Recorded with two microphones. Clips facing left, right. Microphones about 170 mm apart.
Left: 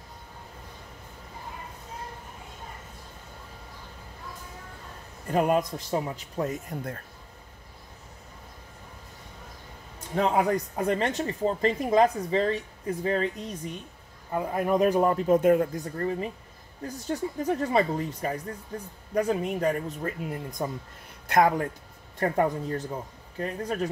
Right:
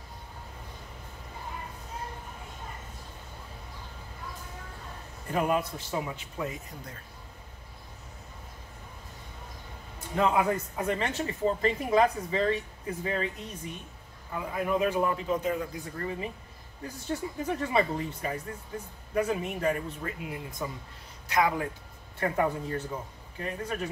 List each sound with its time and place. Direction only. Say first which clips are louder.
5.3 s speech: left 4 dB; 40° left (ahead or behind)
10.1 s speech: left 2 dB; 45° left (ahead or behind)
14.3 s speech: left 4 dB; 45° left (ahead or behind)